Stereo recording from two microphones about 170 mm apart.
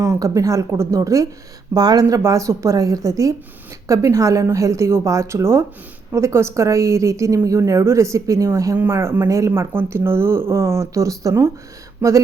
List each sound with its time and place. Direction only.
0.0 s a woman's voice: 20° right (ahead or behind)